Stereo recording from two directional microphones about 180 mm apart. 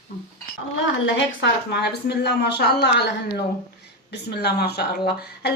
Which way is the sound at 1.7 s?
65° left (ahead or behind).